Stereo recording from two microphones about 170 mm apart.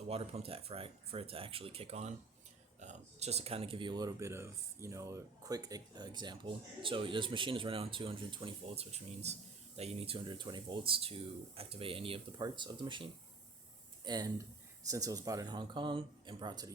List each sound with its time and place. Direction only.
0.1 s speech: 35° right (ahead or behind)